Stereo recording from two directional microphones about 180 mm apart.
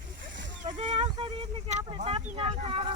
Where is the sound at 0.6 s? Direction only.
40° right (ahead or behind).